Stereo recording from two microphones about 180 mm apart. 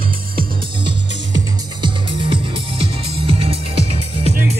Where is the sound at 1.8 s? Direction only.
25° right (ahead or behind).